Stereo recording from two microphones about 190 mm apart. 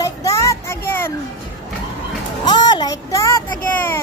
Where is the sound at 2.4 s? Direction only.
20° left (ahead or behind).